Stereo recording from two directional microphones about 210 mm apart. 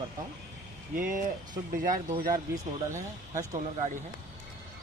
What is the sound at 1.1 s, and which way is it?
Speech, 40° right (ahead or behind).